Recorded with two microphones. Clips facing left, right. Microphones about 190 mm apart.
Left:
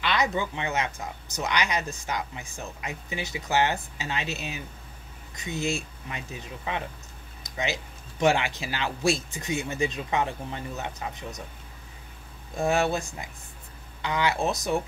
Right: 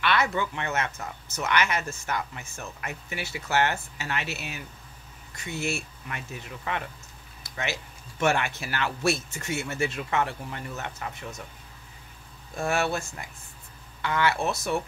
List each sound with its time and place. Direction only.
0.0 s speech: 15° left (ahead or behind)
12.5 s speech: 20° left (ahead or behind)